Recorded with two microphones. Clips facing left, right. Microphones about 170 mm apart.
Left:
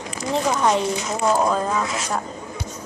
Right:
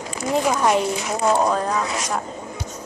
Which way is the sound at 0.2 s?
10° right (ahead or behind).